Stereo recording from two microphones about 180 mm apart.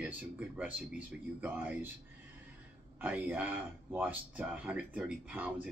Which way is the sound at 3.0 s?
10° right (ahead or behind).